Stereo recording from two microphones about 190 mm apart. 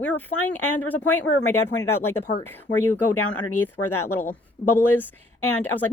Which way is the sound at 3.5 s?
10° left (ahead or behind).